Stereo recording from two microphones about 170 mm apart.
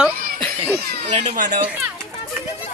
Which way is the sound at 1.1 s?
45° right (ahead or behind).